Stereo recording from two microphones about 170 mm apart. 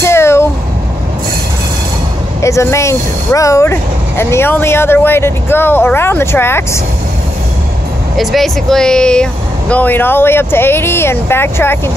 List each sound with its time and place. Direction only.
0.0 s a sound: 15° left (ahead or behind)
2.4 s speech: 15° left (ahead or behind)
8.2 s speech: centre (ahead or behind)